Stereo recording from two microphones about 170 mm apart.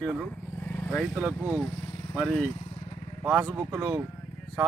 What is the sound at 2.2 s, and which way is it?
Speech, 10° left (ahead or behind).